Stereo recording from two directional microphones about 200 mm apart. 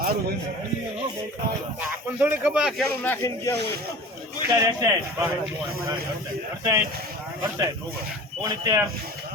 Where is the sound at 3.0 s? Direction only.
10° left (ahead or behind).